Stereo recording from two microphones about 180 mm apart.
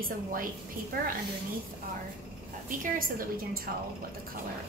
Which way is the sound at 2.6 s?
50° right (ahead or behind).